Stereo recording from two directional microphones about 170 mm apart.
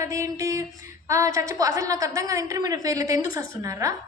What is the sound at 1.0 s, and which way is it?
A woman's voice, 20° right (ahead or behind).